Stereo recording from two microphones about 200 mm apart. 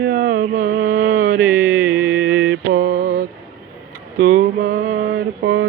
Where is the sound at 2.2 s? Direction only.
75° right (ahead or behind).